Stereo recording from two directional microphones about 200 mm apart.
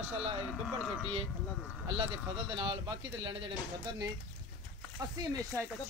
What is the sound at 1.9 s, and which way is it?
Speech, 25° right (ahead or behind).